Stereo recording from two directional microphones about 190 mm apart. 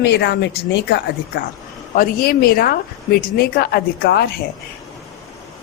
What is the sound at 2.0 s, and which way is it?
A woman's voice, 50° left (ahead or behind).